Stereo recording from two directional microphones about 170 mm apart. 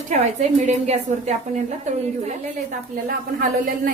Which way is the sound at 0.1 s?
40° right (ahead or behind).